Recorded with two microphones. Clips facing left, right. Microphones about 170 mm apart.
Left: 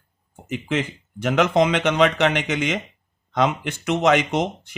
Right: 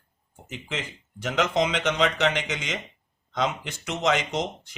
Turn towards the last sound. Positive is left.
turn(degrees=60)  # may be behind; listen again after turning